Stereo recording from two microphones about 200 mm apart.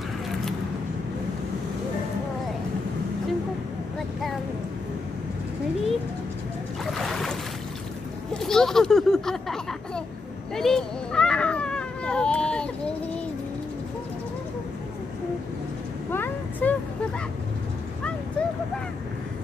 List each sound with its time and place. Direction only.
6.9 s boat: centre (ahead or behind)
8.3 s a sound: 5° left (ahead or behind)
16.1 s vehicle: 10° left (ahead or behind)